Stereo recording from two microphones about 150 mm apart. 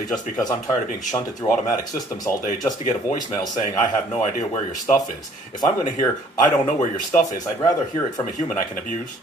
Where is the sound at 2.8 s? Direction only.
55° left (ahead or behind).